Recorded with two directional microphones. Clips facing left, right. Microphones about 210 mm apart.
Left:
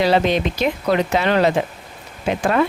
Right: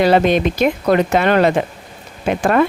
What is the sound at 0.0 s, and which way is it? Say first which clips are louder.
Speech: right 4 dB; 55° right (ahead or behind).